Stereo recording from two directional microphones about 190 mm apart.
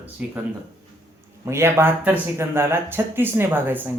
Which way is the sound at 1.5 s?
15° right (ahead or behind).